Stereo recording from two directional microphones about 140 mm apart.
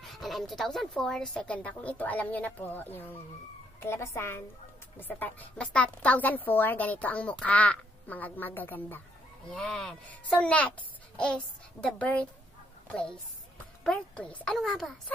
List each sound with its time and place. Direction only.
0.0 s a woman's voice: centre (ahead or behind)
9.5 s a woman's voice: 5° left (ahead or behind)